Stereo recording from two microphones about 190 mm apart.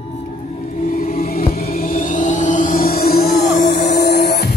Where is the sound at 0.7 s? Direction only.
50° left (ahead or behind).